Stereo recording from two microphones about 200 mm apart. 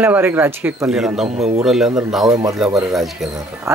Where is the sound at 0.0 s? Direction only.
10° right (ahead or behind).